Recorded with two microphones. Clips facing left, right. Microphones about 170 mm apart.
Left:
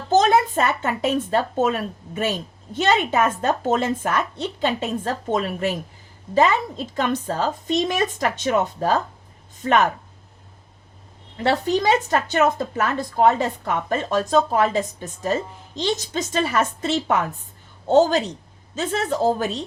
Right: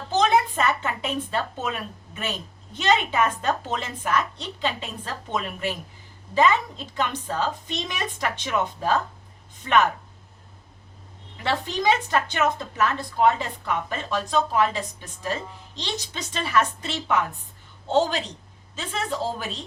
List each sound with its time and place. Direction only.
0.1 s a woman's voice: 45° left (ahead or behind)
11.4 s a woman's voice: 45° left (ahead or behind)